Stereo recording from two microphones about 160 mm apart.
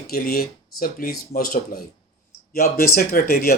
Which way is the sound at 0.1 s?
70° left (ahead or behind).